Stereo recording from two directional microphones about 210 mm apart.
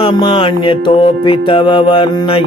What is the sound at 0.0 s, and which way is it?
Mantra, 25° left (ahead or behind).